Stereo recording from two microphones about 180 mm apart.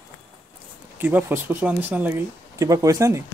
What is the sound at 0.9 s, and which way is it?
Speech, 10° right (ahead or behind).